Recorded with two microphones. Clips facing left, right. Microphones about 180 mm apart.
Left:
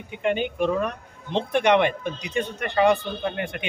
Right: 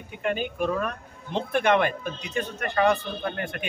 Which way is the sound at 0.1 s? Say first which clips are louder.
Left 4 dB; 20° left (ahead or behind).